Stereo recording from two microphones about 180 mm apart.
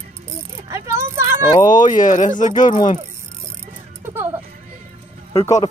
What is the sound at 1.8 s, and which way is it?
Speech, 45° left (ahead or behind).